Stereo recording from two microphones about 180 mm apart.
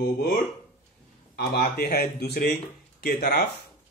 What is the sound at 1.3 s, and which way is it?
Speech, 60° left (ahead or behind).